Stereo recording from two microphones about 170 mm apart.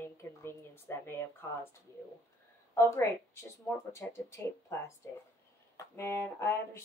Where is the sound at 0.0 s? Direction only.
15° left (ahead or behind).